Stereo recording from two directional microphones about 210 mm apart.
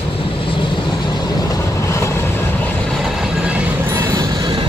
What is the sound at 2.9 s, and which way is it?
Train, centre (ahead or behind).